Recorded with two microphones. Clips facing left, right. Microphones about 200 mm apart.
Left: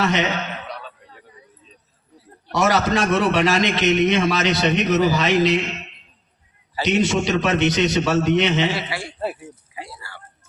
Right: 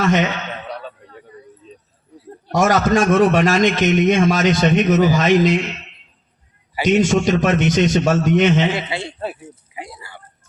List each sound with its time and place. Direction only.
0.0 s a man's voice: 45° right (ahead or behind)
2.5 s a man's voice: 45° right (ahead or behind)
6.8 s a man's voice: 45° right (ahead or behind)
8.7 s a man's voice: 20° right (ahead or behind)
9.7 s a sound: 20° right (ahead or behind)